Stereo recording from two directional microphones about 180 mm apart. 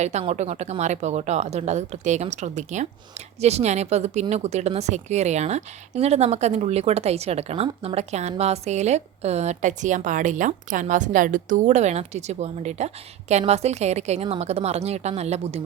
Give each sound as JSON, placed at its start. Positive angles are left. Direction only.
{"t": 0.0, "sound": "speech", "side_deg": -40}